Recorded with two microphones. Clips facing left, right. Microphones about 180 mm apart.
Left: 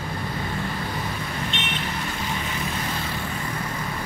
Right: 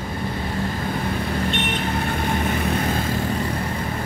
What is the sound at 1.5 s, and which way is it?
Vehicle, 60° right (ahead or behind).